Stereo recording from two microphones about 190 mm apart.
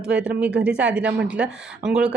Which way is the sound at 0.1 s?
5° right (ahead or behind).